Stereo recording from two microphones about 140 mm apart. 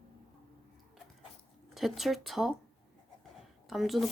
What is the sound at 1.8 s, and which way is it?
Speech, centre (ahead or behind).